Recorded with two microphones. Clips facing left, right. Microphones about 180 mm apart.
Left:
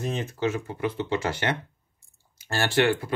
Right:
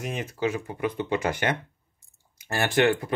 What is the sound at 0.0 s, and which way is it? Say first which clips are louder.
Speech: left 1 dB; 10° right (ahead or behind).